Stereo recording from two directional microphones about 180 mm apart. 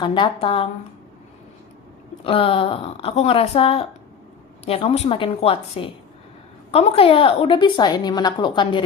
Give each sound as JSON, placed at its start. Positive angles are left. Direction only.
{"t": 0.0, "sound": "a woman's voice", "side_deg": 25}
{"t": 2.2, "sound": "a woman's voice", "side_deg": 30}